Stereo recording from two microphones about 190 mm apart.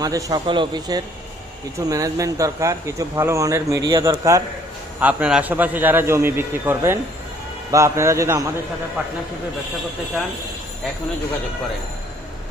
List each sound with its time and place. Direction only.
0.0 s a man's voice: 20° right (ahead or behind)